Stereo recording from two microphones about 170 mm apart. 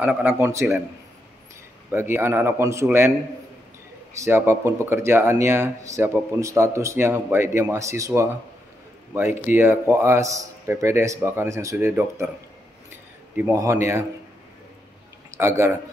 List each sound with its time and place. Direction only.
0.0 s speech: 10° right (ahead or behind)
1.9 s speech: 10° right (ahead or behind)
4.1 s speech: 15° right (ahead or behind)
13.4 s speech: 15° right (ahead or behind)
15.3 s speech: 15° right (ahead or behind)